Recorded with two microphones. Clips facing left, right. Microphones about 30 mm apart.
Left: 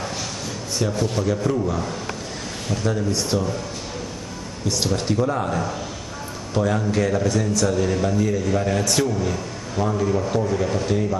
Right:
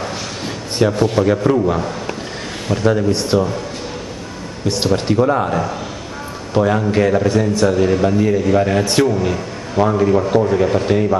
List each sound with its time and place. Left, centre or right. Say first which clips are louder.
0.7 s a man's voice: right 9 dB; right
4.6 s a man's voice: right 6 dB; right